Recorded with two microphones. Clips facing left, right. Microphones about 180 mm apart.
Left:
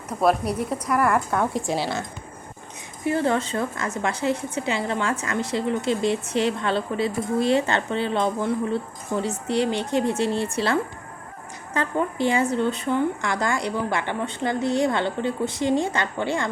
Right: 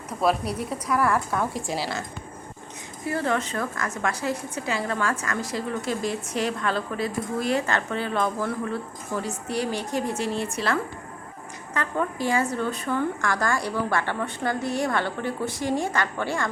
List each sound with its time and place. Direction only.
1.1 s a woman's voice: centre (ahead or behind)
1.6 s a woman's voice: 25° left (ahead or behind)
3.0 s a woman's voice: 25° left (ahead or behind)